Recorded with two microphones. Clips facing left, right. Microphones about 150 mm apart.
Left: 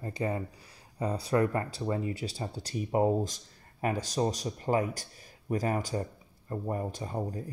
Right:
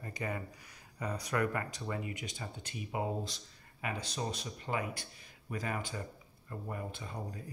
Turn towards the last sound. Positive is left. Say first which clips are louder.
# left 8 dB
turn(degrees=40)  # may be behind; listen again after turning